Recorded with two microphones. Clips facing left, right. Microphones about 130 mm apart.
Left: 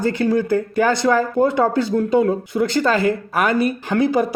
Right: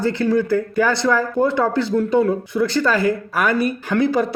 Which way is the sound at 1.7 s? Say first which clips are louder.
Even; 50° left (ahead or behind).